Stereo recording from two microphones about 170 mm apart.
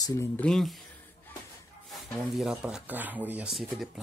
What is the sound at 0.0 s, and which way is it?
Speech, 20° left (ahead or behind).